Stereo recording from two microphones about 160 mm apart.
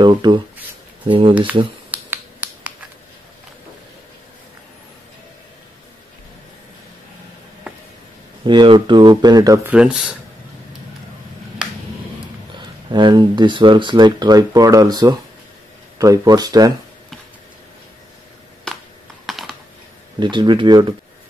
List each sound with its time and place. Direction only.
0.0 s speech: 25° right (ahead or behind)
1.9 s finger snapping: 10° right (ahead or behind)
8.5 s speech: 30° right (ahead or behind)
9.7 s speech: 5° right (ahead or behind)
12.9 s speech: 30° right (ahead or behind)
18.7 s a sound: 5° left (ahead or behind)
19.2 s computer keyboard: centre (ahead or behind)
20.2 s speech: 30° right (ahead or behind)